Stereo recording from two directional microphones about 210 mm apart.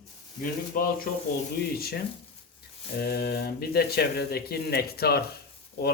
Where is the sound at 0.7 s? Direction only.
45° left (ahead or behind).